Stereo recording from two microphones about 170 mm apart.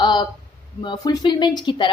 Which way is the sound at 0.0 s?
25° left (ahead or behind).